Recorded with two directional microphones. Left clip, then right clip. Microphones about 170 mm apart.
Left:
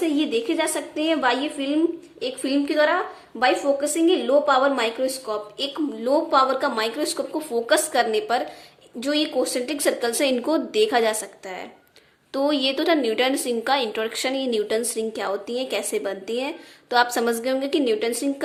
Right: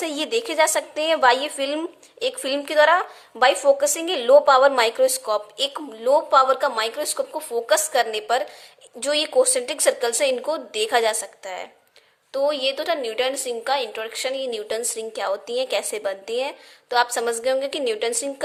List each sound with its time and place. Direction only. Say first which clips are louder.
0.0 s a woman's voice: left 1 dB; 25° right (ahead or behind)